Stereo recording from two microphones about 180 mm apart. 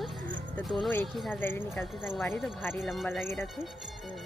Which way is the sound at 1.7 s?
Centre (ahead or behind).